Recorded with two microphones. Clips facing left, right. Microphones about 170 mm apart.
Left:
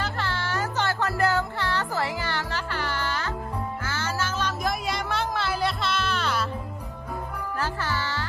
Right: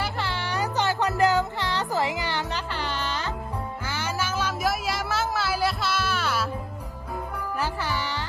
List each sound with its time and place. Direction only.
0.0 s music: 15° right (ahead or behind)
7.6 s music: 15° right (ahead or behind)